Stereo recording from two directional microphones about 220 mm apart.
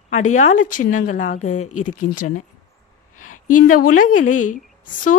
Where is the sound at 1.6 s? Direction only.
90° left.